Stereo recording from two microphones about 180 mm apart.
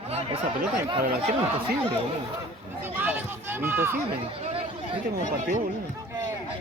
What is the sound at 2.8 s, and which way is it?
Speech, 10° right (ahead or behind).